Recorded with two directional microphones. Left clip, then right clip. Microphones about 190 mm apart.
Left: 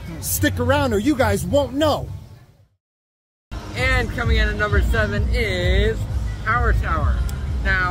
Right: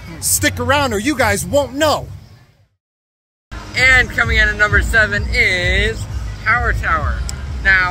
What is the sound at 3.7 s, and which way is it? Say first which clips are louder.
Speech: right 10 dB; 25° left (ahead or behind).